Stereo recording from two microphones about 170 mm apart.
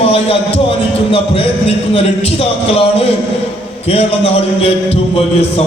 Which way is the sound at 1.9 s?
35° left (ahead or behind).